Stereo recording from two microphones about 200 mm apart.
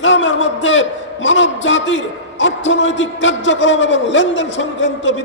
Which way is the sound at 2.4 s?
70° left (ahead or behind).